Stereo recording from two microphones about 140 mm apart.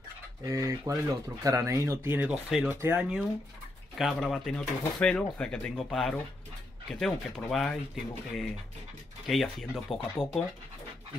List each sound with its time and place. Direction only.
0.4 s speech: 25° right (ahead or behind)
4.0 s speech: centre (ahead or behind)